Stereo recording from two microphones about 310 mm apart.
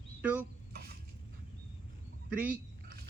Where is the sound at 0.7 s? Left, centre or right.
Right.